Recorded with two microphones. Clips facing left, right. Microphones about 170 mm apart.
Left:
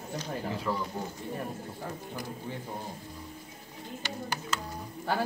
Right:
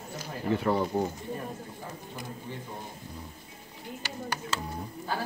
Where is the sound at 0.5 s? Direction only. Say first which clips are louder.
Right 8 dB; 60° right (ahead or behind).